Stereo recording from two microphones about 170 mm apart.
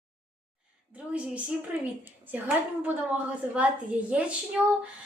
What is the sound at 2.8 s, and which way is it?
A woman's voice, 10° right (ahead or behind).